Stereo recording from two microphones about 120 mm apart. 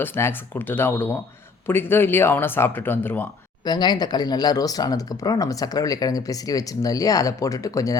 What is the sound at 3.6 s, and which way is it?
Speech, 35° left (ahead or behind).